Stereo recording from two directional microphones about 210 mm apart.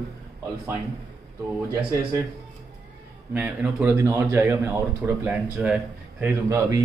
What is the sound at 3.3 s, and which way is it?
A man's voice, 5° right (ahead or behind).